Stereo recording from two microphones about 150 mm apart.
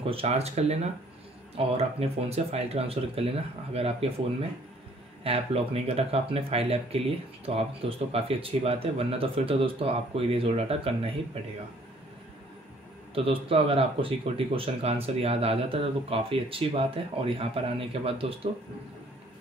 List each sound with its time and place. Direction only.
0.0 s speech: 40° right (ahead or behind)
13.1 s speech: 40° right (ahead or behind)